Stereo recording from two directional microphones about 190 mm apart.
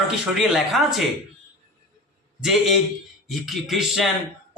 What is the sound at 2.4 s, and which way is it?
A man's voice, centre (ahead or behind).